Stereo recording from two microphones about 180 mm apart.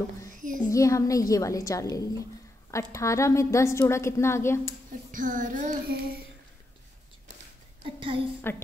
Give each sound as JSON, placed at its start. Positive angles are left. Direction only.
{"t": 0.7, "sound": "a woman's voice", "side_deg": 15}
{"t": 5.1, "sound": "child singing", "side_deg": -45}
{"t": 7.8, "sound": "a sound", "side_deg": -30}
{"t": 8.5, "sound": "a woman's voice", "side_deg": 15}